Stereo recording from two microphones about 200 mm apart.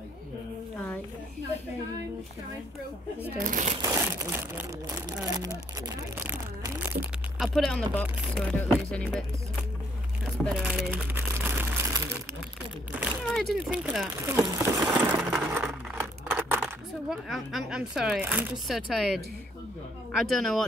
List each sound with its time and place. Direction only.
3.3 s speech: 40° right (ahead or behind)
3.8 s crumpling: 15° right (ahead or behind)
5.2 s a sound: 15° right (ahead or behind); by 8.7 s 10° left (ahead or behind)
8.7 s speech: centre (ahead or behind)
10.2 s crumpling: centre (ahead or behind)
13.0 s speech: centre (ahead or behind)
14.2 s coin: 10° right (ahead or behind)
17.3 s speech: centre (ahead or behind)